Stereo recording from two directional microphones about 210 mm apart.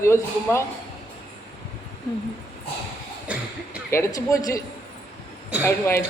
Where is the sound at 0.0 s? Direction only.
10° left (ahead or behind).